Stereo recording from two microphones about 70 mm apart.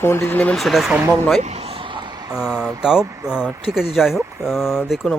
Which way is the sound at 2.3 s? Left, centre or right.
Centre.